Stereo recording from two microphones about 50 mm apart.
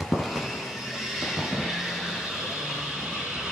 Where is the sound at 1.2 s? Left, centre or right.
Centre.